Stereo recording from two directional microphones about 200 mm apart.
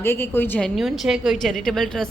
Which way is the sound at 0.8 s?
Centre (ahead or behind).